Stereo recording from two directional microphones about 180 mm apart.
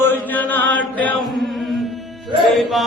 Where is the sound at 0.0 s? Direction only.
10° left (ahead or behind).